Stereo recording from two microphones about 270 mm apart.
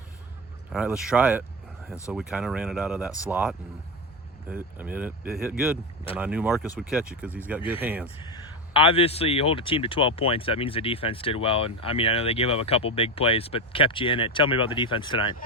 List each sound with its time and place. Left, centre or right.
0.7 s speech: centre
8.7 s speech: left